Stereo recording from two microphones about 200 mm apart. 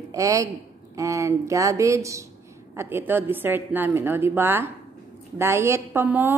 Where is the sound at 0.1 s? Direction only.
15° right (ahead or behind).